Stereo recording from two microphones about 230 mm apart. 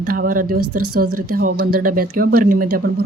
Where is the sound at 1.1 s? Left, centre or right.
Right.